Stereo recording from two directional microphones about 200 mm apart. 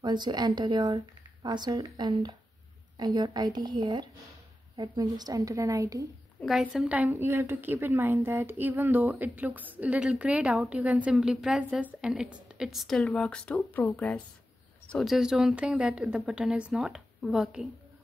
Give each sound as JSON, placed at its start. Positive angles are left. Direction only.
{"t": 0.0, "sound": "a woman's voice", "side_deg": -20}
{"t": 6.4, "sound": "a woman's voice", "side_deg": 0}